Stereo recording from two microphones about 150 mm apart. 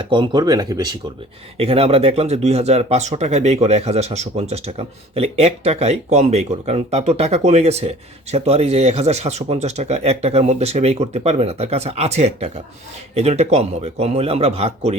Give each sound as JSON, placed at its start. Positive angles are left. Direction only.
{"t": 0.0, "sound": "speech", "side_deg": -30}
{"t": 1.5, "sound": "speech", "side_deg": -40}